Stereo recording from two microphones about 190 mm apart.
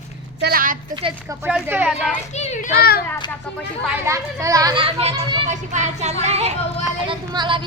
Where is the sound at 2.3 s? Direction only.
40° left (ahead or behind).